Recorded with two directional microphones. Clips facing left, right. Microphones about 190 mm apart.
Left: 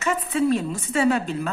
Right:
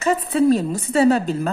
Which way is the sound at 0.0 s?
35° right (ahead or behind).